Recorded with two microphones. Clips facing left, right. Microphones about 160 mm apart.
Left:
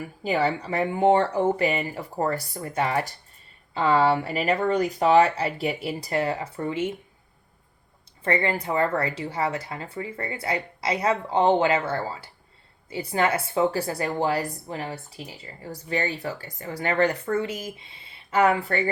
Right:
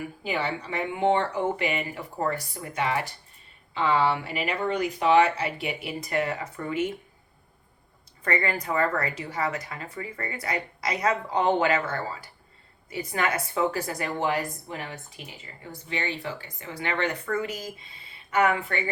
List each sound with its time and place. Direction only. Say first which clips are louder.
0.3 s speech: left 6 dB; 40° left (ahead or behind)
8.2 s speech: left 3 dB; 25° left (ahead or behind)